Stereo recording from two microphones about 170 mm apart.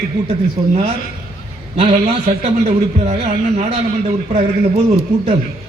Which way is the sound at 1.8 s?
40° right (ahead or behind).